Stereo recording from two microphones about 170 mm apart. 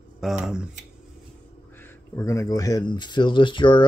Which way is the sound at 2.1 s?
15° left (ahead or behind).